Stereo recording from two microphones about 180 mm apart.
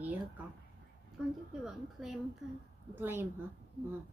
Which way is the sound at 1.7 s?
Centre (ahead or behind).